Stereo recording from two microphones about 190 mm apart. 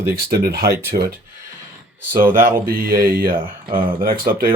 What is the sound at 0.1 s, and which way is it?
Speech, 55° right (ahead or behind).